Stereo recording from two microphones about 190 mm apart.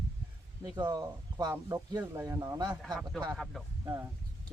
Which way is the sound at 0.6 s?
20° right (ahead or behind).